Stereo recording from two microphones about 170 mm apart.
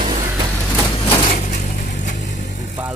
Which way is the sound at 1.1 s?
30° left (ahead or behind).